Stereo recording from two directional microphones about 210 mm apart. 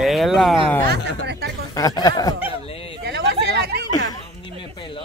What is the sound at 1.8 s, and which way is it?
Speech, 15° left (ahead or behind).